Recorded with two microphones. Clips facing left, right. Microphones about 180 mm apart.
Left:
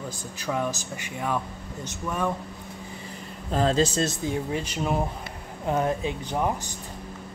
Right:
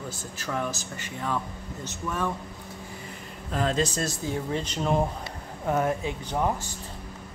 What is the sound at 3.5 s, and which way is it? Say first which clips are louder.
Speech: left 4 dB; 30° left (ahead or behind).